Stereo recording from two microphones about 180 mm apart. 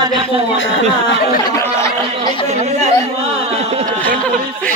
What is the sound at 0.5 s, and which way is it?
Speech, 90° left.